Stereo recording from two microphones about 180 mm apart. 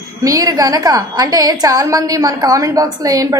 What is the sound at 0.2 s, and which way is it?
A woman's voice, 20° right (ahead or behind).